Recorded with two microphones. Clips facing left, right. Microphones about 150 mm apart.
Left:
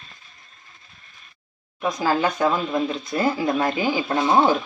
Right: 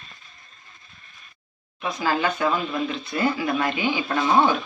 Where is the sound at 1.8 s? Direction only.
40° left (ahead or behind).